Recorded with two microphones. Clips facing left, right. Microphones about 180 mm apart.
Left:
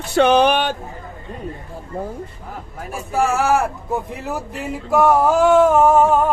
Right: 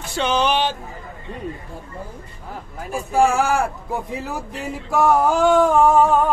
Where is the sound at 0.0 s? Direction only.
60° left (ahead or behind).